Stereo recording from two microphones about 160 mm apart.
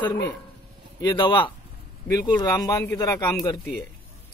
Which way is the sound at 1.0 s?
25° left (ahead or behind).